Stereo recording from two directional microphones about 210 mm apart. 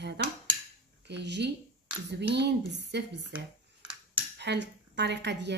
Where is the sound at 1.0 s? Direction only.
55° right (ahead or behind).